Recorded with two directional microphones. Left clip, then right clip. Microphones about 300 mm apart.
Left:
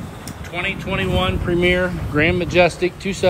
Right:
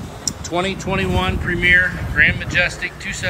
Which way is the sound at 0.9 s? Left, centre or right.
Centre.